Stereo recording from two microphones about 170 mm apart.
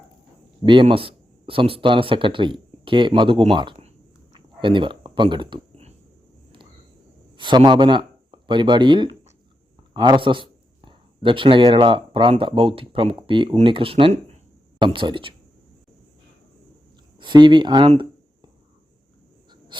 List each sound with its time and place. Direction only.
0.6 s speech: 30° right (ahead or behind)
7.3 s speech: 25° right (ahead or behind)
17.2 s speech: 25° right (ahead or behind)